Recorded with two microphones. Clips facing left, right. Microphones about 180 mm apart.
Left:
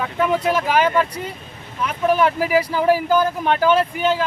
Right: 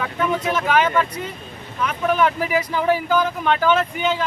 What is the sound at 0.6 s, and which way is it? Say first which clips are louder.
Speech: left 1 dB; 10° left (ahead or behind).